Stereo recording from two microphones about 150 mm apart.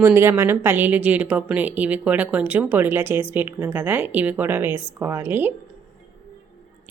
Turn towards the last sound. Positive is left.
turn(degrees=-15)  # may be behind; listen again after turning